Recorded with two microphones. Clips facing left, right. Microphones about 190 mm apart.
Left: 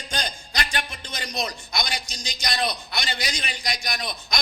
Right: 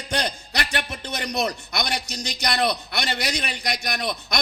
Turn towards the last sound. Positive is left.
turn(degrees=-60)  # may be behind; listen again after turning